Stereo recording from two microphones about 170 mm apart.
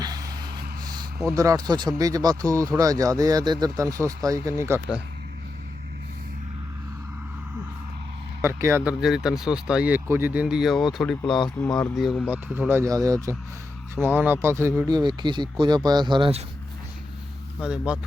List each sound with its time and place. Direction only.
0.0 s a sound: 20° right (ahead or behind)
2.0 s speech: 20° right (ahead or behind)
8.4 s speech: 15° right (ahead or behind); by 11.2 s centre (ahead or behind)
11.3 s speech: 30° left (ahead or behind)
11.5 s speech: 10° left (ahead or behind)
12.5 s speech: 15° right (ahead or behind)
14.9 s speech: 25° right (ahead or behind)
17.6 s speech: 5° right (ahead or behind)